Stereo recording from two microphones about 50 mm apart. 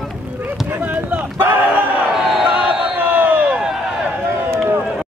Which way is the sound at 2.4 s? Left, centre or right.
Right.